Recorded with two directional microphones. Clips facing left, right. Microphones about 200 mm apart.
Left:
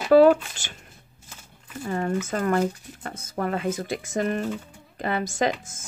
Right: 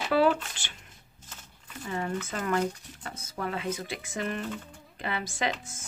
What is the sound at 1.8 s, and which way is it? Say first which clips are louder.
Speech: left 6 dB; 45° left (ahead or behind).